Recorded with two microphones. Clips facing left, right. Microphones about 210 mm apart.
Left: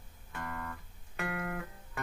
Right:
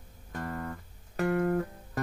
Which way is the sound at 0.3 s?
35° right (ahead or behind).